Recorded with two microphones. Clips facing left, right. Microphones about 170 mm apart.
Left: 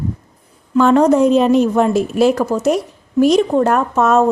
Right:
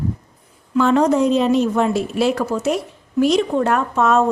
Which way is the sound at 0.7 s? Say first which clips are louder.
Left 4 dB; 50° left (ahead or behind).